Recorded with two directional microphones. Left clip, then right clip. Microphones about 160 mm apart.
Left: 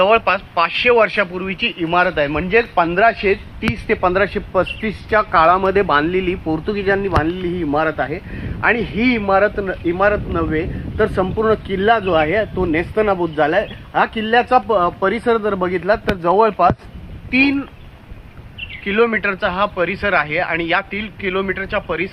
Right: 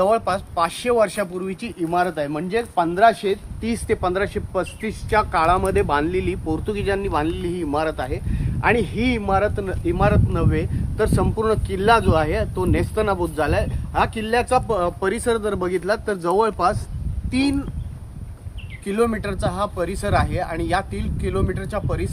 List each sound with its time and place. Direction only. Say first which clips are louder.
0.0 s a man's voice: left 5 dB; 15° right (ahead or behind); by 17.7 s 30° left (ahead or behind)
18.9 s speech: left 6 dB; 5° right (ahead or behind)